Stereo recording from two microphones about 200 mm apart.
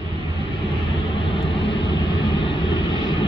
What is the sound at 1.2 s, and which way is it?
Vehicle, 25° left (ahead or behind).